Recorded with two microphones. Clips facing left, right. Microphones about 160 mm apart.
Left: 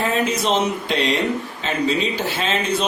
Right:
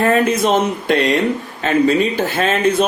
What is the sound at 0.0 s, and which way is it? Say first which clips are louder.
Speech: right 6 dB; 55° right (ahead or behind).